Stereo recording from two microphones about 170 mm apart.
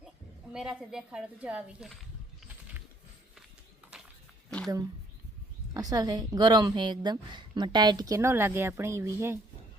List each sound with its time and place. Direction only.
0.5 s speech: 5° right (ahead or behind)
5.7 s a woman's voice: 20° right (ahead or behind)